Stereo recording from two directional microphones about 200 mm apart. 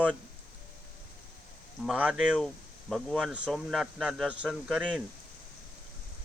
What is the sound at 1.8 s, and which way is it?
Speech, 5° right (ahead or behind).